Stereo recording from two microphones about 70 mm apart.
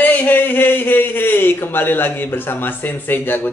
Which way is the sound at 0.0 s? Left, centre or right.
Left.